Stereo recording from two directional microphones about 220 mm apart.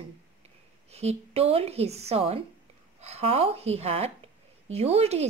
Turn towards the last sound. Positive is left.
turn(degrees=-30)  # may be behind; listen again after turning